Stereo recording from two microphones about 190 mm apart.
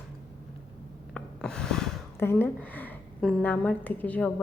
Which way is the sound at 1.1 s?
5° left (ahead or behind).